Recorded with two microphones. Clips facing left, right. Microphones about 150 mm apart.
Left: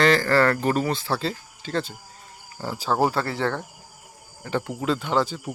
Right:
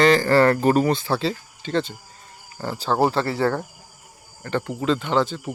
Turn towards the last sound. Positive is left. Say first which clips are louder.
# right 2 dB
turn(degrees=5)  # may be behind; listen again after turning